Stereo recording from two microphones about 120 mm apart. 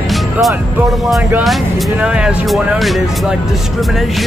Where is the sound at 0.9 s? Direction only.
Centre (ahead or behind).